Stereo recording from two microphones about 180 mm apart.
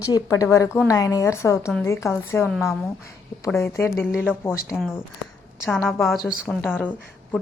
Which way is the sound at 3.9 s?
Centre (ahead or behind).